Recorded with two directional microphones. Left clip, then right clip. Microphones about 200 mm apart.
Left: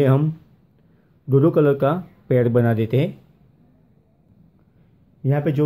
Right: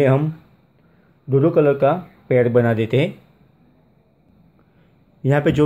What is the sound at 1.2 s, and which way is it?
Speech, 15° left (ahead or behind).